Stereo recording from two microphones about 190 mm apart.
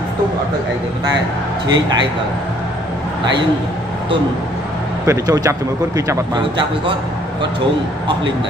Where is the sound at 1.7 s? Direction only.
20° right (ahead or behind).